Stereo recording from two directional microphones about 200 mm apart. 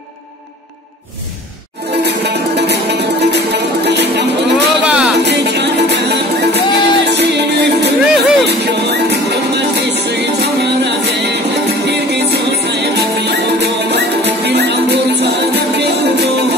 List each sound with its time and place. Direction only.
2.0 s music: 55° right (ahead or behind)
4.8 s music: 5° right (ahead or behind)
5.2 s music: 60° right (ahead or behind)